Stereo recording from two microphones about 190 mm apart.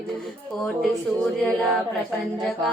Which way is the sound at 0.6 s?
Centre (ahead or behind).